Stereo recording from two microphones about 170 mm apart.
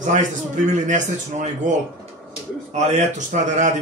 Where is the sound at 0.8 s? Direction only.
45° right (ahead or behind).